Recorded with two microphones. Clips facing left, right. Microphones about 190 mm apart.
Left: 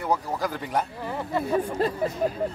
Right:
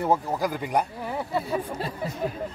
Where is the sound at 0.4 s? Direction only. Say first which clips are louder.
Right 2 dB; 15° right (ahead or behind).